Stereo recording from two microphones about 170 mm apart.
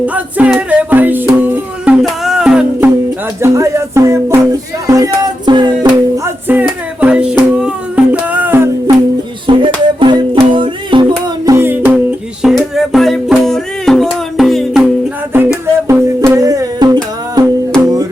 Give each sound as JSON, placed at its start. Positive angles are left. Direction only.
{"t": 0.0, "sound": "music", "side_deg": -10}
{"t": 3.4, "sound": "music", "side_deg": -15}
{"t": 6.5, "sound": "music", "side_deg": -10}
{"t": 9.5, "sound": "music", "side_deg": -30}
{"t": 11.4, "sound": "music", "side_deg": -15}
{"t": 15.9, "sound": "music", "side_deg": -15}